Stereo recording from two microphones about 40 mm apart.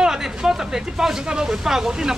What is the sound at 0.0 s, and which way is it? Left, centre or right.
Speech, centre.